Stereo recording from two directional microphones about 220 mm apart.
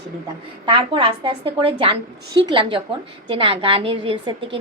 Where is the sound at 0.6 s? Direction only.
25° right (ahead or behind).